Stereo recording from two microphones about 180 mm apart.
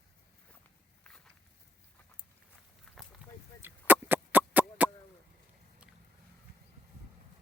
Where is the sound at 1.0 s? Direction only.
5° left (ahead or behind).